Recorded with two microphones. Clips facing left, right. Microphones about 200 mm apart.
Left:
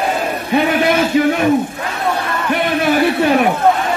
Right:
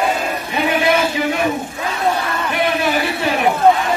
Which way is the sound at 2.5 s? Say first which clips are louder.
Left 4 dB; 55° left (ahead or behind).